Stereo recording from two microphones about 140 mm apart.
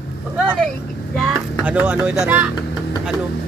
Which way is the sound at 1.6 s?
10° right (ahead or behind).